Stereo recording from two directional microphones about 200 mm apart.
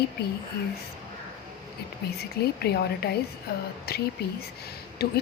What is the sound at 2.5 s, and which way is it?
A woman's voice, 55° left (ahead or behind).